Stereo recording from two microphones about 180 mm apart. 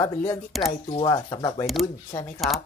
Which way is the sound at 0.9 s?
25° left (ahead or behind).